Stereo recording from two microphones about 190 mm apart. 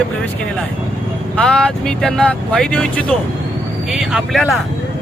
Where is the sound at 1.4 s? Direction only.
5° left (ahead or behind).